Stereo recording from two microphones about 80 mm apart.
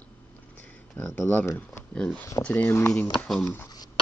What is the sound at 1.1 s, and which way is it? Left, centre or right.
Speech, left.